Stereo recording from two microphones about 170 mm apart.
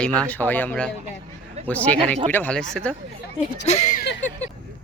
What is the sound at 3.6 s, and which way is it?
Speech, 40° left (ahead or behind).